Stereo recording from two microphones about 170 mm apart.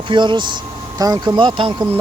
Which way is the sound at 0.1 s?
30° right (ahead or behind).